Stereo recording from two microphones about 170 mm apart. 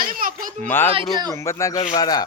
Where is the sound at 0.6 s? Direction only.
10° left (ahead or behind).